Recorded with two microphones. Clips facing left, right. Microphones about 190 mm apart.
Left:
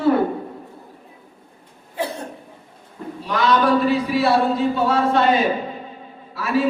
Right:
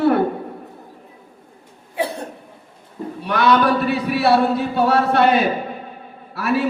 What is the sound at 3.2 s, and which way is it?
A man's voice, 65° right (ahead or behind).